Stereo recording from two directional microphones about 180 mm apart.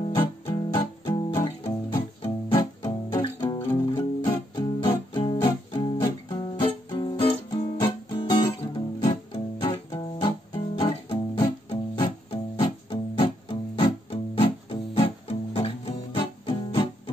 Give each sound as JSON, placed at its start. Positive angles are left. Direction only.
{"t": 0.0, "sound": "music", "side_deg": 30}
{"t": 4.6, "sound": "music", "side_deg": 25}